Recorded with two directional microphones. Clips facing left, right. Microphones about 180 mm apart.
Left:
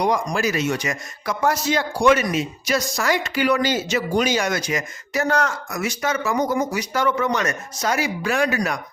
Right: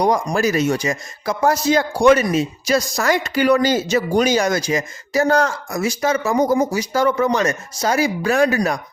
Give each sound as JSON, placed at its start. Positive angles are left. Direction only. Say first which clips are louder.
{"t": 0.0, "sound": "speech", "louder": "right 4 dB", "side_deg": -40}